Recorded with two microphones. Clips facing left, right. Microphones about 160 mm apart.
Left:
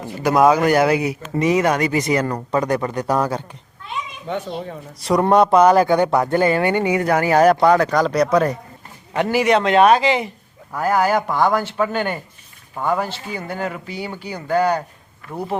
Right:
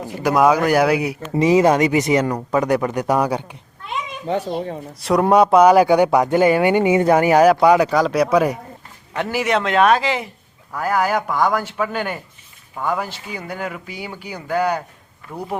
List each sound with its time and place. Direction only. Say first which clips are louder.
0.0 s speech: left 1 dB; 10° right (ahead or behind)
1.4 s speech: right 3 dB; 25° right (ahead or behind)
2.2 s speech: right 1 dB; 5° right (ahead or behind)
4.3 s a child's voice: right 4 dB; 35° right (ahead or behind)
4.9 s speech: even; centre (ahead or behind)